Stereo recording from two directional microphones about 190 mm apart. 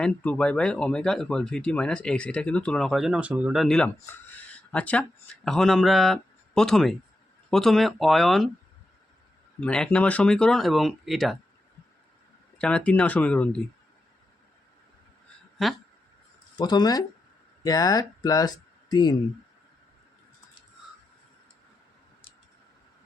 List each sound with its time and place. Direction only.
0.0 s speech: 5° left (ahead or behind)
9.6 s speech: 5° left (ahead or behind)
12.5 s speech: 5° left (ahead or behind)
16.6 s speech: 20° left (ahead or behind)